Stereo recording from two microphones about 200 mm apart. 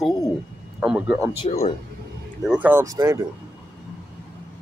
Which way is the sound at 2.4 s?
5° right (ahead or behind).